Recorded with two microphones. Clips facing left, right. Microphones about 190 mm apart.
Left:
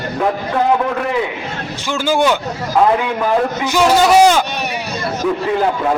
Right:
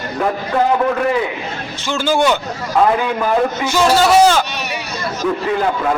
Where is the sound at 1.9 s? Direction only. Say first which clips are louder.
Even; 15° left (ahead or behind).